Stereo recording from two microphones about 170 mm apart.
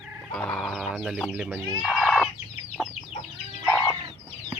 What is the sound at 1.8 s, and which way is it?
Chicken, centre (ahead or behind).